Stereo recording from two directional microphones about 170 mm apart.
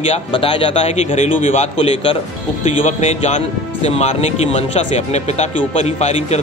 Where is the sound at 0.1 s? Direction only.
30° left (ahead or behind).